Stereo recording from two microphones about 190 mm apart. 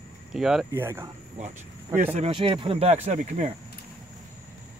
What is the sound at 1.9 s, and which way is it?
Speech, 35° right (ahead or behind).